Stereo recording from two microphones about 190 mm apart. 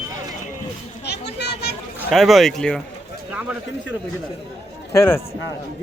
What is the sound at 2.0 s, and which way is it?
Speech, centre (ahead or behind).